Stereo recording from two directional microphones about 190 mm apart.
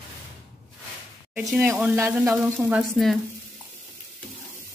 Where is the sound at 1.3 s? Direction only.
10° right (ahead or behind).